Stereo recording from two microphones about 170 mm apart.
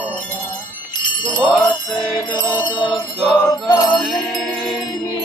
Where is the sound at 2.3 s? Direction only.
25° left (ahead or behind).